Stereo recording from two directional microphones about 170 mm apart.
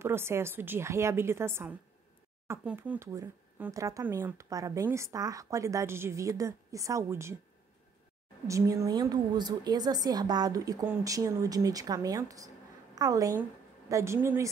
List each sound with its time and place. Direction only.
0.0 s speech: 15° right (ahead or behind)
8.5 s a woman's voice: 20° right (ahead or behind)